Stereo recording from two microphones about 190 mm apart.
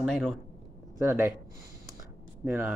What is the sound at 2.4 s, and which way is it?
Speech, 10° right (ahead or behind).